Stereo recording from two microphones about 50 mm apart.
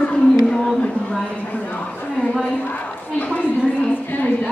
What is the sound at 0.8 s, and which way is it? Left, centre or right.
Speech, centre.